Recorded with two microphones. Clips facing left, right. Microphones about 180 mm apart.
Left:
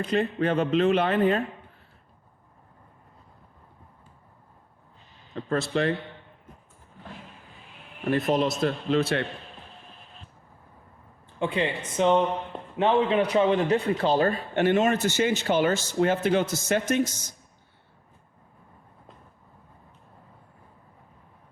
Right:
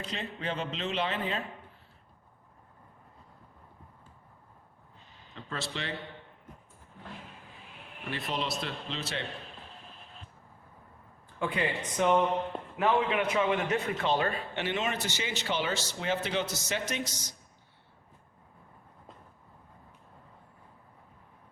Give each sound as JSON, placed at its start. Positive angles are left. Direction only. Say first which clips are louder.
{"t": 0.0, "sound": "a man's voice", "louder": "left 12 dB", "side_deg": 55}
{"t": 5.3, "sound": "speech", "louder": "left 12 dB", "side_deg": 50}
{"t": 8.0, "sound": "a man's voice", "louder": "left 11 dB", "side_deg": 45}
{"t": 11.3, "sound": "a man's voice", "louder": "left 4 dB", "side_deg": 25}